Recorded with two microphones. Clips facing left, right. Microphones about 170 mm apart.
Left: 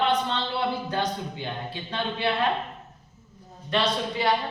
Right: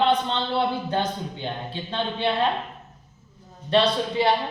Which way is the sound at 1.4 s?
25° right (ahead or behind).